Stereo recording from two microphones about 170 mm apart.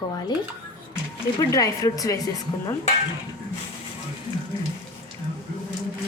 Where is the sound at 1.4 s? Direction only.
20° left (ahead or behind).